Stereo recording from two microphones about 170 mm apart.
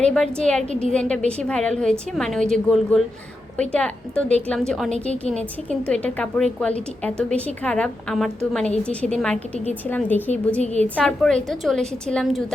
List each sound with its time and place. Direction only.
0.0 s a woman's voice: 5° left (ahead or behind)